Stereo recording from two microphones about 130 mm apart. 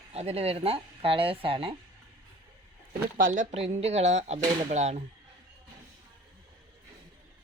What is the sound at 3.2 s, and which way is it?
Speech, 90° right.